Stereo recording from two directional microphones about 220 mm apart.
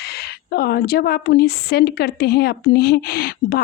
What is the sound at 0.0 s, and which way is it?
A woman's voice, 45° left (ahead or behind).